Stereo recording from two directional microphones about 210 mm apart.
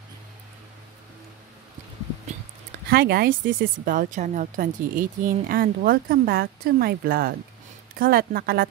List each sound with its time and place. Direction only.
2.9 s speech: 45° right (ahead or behind)